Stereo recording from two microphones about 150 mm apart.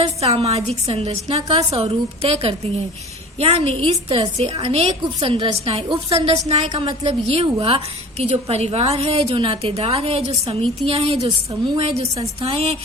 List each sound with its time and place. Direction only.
0.2 s a woman's voice: 45° right (ahead or behind)
11.3 s a woman's voice: 30° right (ahead or behind)
11.8 s a woman's voice: 40° right (ahead or behind)